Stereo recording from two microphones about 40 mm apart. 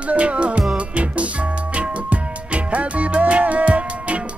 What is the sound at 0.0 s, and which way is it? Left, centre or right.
Music, right.